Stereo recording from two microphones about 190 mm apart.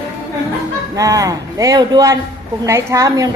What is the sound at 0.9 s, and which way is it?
A woman's voice, 15° right (ahead or behind).